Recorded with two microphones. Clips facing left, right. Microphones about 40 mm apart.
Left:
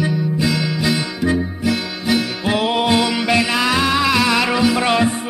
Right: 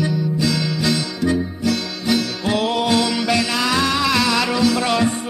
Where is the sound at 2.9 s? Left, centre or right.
Centre.